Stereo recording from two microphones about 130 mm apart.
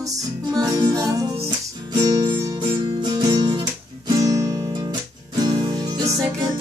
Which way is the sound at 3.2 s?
35° right (ahead or behind).